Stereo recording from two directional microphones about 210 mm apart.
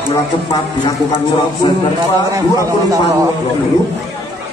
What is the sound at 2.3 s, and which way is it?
Speech, 15° right (ahead or behind).